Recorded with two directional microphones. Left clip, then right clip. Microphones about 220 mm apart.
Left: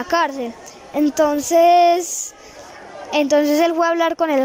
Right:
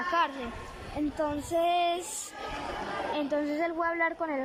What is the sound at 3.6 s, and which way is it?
Speech, 50° left (ahead or behind).